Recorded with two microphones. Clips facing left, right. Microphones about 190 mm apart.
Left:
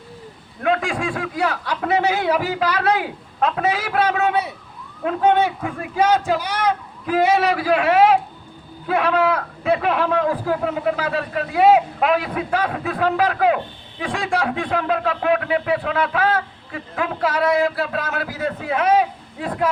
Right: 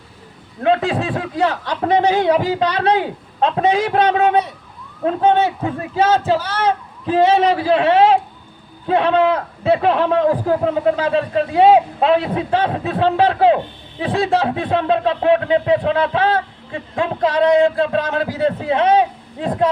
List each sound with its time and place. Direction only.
0.6 s speech: 30° right (ahead or behind)
6.2 s a man's voice: 15° left (ahead or behind)
7.3 s speech: 30° right (ahead or behind)